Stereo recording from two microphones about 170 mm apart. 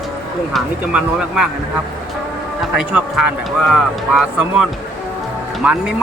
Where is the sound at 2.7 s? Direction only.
5° right (ahead or behind).